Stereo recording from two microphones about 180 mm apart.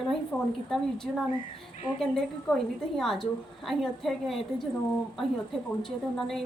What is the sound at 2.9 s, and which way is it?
A woman's voice, centre (ahead or behind).